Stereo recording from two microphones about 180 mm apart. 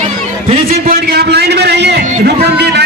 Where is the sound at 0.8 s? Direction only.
65° right (ahead or behind).